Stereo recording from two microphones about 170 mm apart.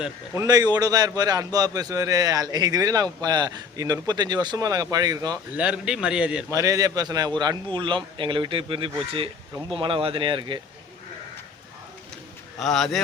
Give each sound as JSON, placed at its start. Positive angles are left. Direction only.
{"t": 0.3, "sound": "a man's voice", "side_deg": -20}
{"t": 5.5, "sound": "a man's voice", "side_deg": -5}
{"t": 6.5, "sound": "a man's voice", "side_deg": -20}
{"t": 12.5, "sound": "a man's voice", "side_deg": 0}